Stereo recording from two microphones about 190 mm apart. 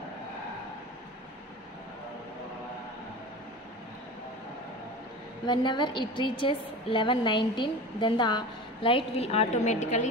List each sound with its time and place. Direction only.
5.5 s a woman's voice: 25° left (ahead or behind)